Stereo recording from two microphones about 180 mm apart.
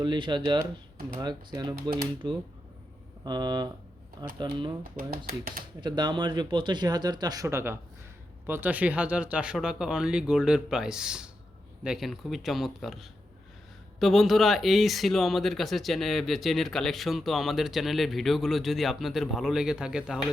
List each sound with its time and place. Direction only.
0.0 s speech: 25° right (ahead or behind)
0.6 s speech: 55° right (ahead or behind)
1.2 s speech: 25° right (ahead or behind)
4.9 s speech: 50° right (ahead or behind)
5.8 s speech: 25° right (ahead or behind); by 20.1 s 5° right (ahead or behind)